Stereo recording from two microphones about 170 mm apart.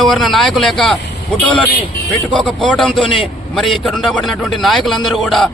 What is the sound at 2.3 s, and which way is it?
Speech, 5° left (ahead or behind).